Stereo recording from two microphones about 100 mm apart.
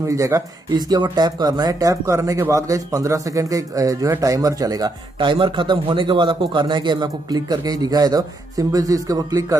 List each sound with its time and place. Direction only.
0.0 s a man's voice: 30° right (ahead or behind)
5.2 s a man's voice: 55° right (ahead or behind); by 9.6 s 35° right (ahead or behind)